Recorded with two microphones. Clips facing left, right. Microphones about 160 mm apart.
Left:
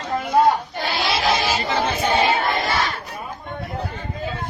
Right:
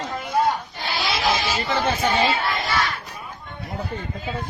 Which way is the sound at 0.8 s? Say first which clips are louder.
Left 3 dB; 60° left (ahead or behind).